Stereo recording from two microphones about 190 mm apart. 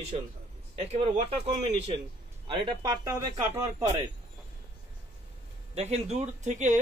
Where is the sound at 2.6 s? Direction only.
20° right (ahead or behind).